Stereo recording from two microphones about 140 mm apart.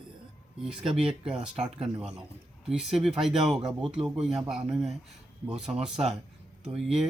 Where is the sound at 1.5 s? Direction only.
50° right (ahead or behind).